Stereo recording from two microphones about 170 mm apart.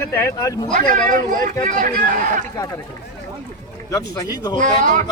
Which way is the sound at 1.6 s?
50° right (ahead or behind).